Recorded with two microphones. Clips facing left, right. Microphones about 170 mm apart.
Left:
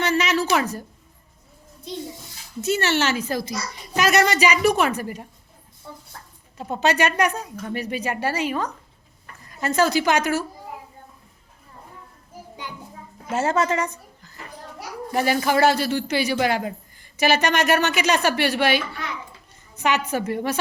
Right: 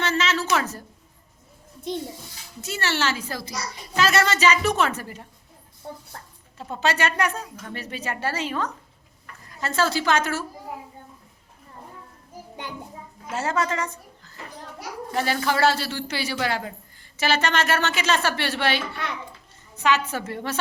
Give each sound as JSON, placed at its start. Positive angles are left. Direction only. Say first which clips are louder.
{"t": 0.0, "sound": "a sound", "louder": "left 3 dB", "side_deg": 15}
{"t": 0.5, "sound": "a man's voice", "louder": "left 3 dB", "side_deg": 15}
{"t": 2.6, "sound": "a woman's voice", "louder": "left 5 dB", "side_deg": 20}
{"t": 6.6, "sound": "a man's voice", "louder": "left 3 dB", "side_deg": 20}
{"t": 13.3, "sound": "a woman's voice", "louder": "left 4 dB", "side_deg": 25}